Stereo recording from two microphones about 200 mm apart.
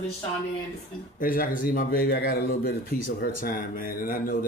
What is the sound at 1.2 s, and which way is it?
Speech, 45° left (ahead or behind).